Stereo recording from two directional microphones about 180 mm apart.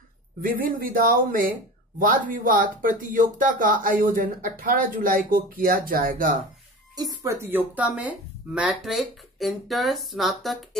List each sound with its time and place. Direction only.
0.4 s speech: 50° right (ahead or behind)
7.0 s speech: 20° right (ahead or behind); by 10.8 s centre (ahead or behind)